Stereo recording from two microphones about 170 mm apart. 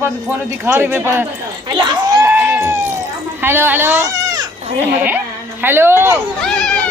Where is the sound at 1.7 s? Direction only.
25° right (ahead or behind).